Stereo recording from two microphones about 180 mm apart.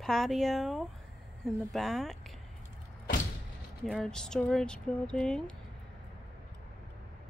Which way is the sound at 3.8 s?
Centre (ahead or behind).